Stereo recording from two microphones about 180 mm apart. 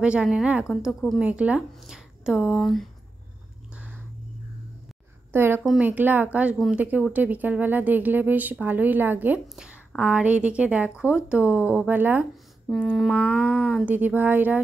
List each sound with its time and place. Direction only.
0.0 s a woman's voice: 5° right (ahead or behind)
3.7 s a sound: 10° right (ahead or behind)
5.3 s a woman's voice: 10° right (ahead or behind); by 13.7 s 5° left (ahead or behind)
13.7 s a woman's voice: 5° right (ahead or behind)